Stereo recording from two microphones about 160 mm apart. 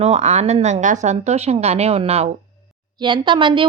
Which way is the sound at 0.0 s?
45° right (ahead or behind).